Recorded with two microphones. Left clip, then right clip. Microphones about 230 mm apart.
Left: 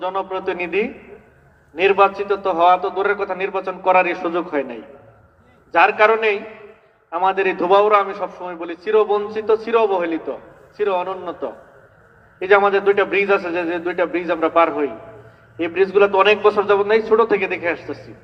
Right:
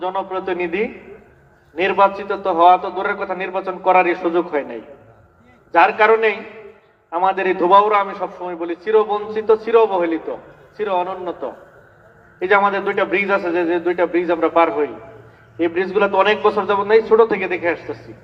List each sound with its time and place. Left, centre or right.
0.0 s a man's voice: left